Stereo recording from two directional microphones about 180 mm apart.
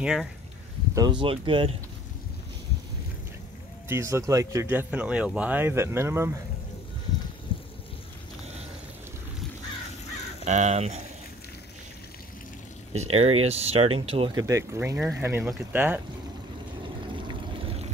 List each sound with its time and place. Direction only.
0.0 s speech: centre (ahead or behind)
0.9 s speech: 25° right (ahead or behind)
3.9 s speech: 15° right (ahead or behind)
7.5 s a sound: 30° left (ahead or behind)
10.4 s speech: 40° right (ahead or behind)
12.9 s speech: 35° right (ahead or behind); by 16.0 s 10° right (ahead or behind)
17.3 s a sound: 35° right (ahead or behind)